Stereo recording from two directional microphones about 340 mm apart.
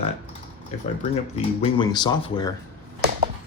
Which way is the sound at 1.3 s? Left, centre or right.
Centre.